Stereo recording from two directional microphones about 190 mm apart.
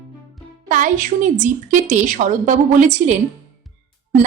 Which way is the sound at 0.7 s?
45° right (ahead or behind).